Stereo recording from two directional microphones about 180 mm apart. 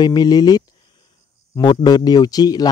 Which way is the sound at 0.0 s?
20° left (ahead or behind).